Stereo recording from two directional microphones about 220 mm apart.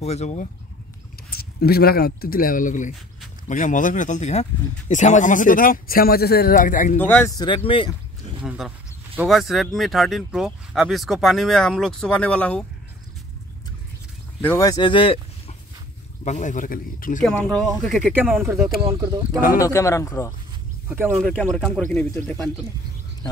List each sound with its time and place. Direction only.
0.0 s speech: 30° left (ahead or behind)
1.3 s speech: 45° left (ahead or behind)
7.0 s speech: 10° left (ahead or behind)
7.3 s speech: 20° left (ahead or behind)
8.4 s speech: 5° right (ahead or behind)
14.4 s speech: 10° left (ahead or behind); by 17.2 s 40° left (ahead or behind)
17.2 s speech: 5° left (ahead or behind); by 19.1 s 15° right (ahead or behind)
19.6 s speech: 15° left (ahead or behind)
20.9 s speech: 10° right (ahead or behind)
21.2 s speech: 5° left (ahead or behind)